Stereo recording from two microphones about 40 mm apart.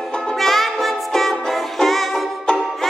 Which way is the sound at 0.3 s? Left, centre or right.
Centre.